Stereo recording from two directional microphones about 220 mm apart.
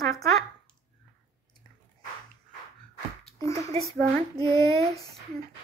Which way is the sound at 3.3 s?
15° left (ahead or behind).